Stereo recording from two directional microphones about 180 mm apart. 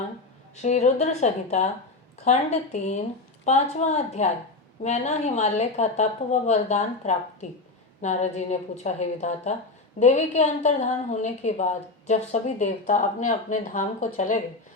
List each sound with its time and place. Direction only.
0.5 s a woman's voice: 40° left (ahead or behind)